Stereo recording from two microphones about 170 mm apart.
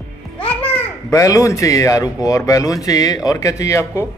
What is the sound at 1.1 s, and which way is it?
Speech, 20° left (ahead or behind).